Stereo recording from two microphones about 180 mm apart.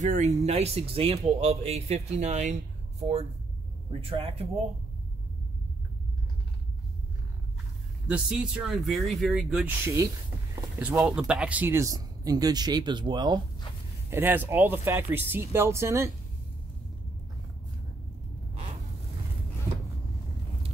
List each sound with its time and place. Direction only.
0.0 s speech: 40° right (ahead or behind)
8.1 s speech: 5° right (ahead or behind); by 13.4 s 25° right (ahead or behind)
14.1 s speech: 10° right (ahead or behind)